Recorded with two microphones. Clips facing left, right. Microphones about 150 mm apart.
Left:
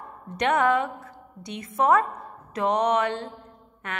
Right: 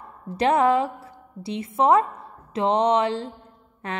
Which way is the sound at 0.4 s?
30° right (ahead or behind).